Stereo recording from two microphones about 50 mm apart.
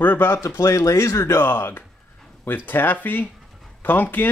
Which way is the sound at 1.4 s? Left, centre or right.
Left.